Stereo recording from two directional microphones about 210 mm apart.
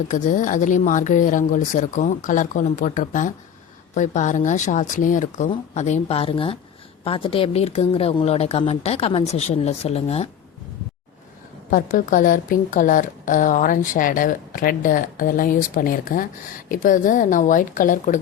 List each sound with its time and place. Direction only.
0.1 s a woman's voice: 35° left (ahead or behind)
11.7 s a woman's voice: 40° left (ahead or behind)